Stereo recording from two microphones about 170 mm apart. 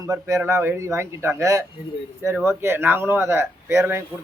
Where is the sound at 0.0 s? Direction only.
15° right (ahead or behind).